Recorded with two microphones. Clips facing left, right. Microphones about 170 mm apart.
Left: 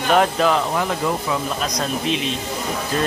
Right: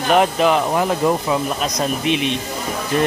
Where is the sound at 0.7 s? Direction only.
25° right (ahead or behind).